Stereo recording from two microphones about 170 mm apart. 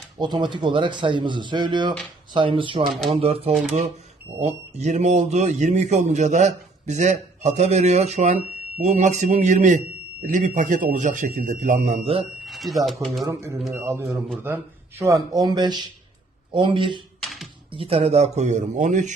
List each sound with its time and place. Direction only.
0.2 s a man's voice: 25° right (ahead or behind); by 12.1 s 45° right (ahead or behind)
12.5 s speech: centre (ahead or behind)
13.2 s speech: 15° right (ahead or behind)
17.2 s typing: centre (ahead or behind)
17.7 s speech: 30° right (ahead or behind)